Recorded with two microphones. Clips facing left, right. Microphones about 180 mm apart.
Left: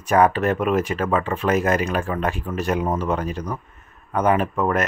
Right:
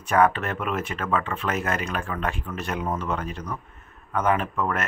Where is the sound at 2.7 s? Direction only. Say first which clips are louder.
Left 6 dB; 25° left (ahead or behind).